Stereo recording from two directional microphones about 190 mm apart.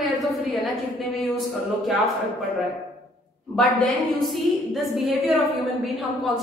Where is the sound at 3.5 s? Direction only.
Centre (ahead or behind).